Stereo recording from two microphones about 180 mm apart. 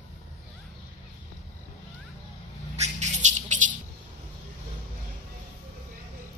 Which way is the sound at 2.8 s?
40° right (ahead or behind).